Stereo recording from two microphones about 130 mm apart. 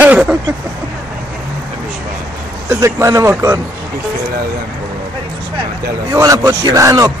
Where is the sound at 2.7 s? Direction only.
20° right (ahead or behind).